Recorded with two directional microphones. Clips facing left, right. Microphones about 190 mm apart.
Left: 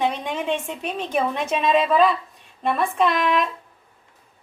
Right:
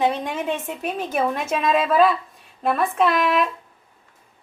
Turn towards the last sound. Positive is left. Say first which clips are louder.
# right 1 dB
turn(degrees=-5)  # may be behind; listen again after turning